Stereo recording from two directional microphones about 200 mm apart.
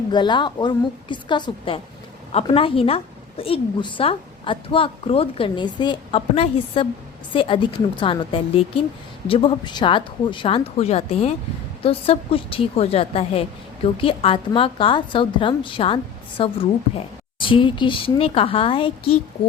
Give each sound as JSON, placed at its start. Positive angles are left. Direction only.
{"t": 0.1, "sound": "a woman's voice", "side_deg": 20}